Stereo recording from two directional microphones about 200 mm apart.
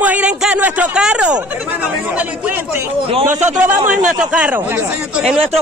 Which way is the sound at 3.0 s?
30° right (ahead or behind).